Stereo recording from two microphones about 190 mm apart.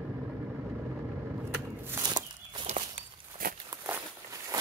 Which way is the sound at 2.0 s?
20° right (ahead or behind).